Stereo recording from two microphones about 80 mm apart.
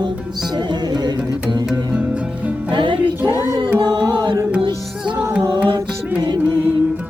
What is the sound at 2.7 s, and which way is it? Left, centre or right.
Music, right.